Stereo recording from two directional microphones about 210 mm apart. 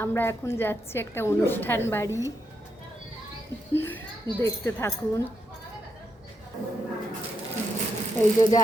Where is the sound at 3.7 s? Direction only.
10° left (ahead or behind).